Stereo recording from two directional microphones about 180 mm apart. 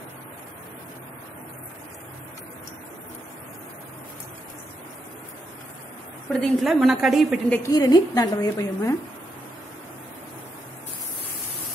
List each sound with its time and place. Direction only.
6.2 s a woman's voice: centre (ahead or behind)
7.6 s a woman's voice: 20° left (ahead or behind)